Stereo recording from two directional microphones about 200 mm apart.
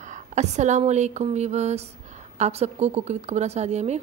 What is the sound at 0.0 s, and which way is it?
A woman's voice, 35° right (ahead or behind).